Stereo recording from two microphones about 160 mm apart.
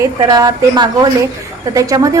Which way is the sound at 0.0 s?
25° right (ahead or behind).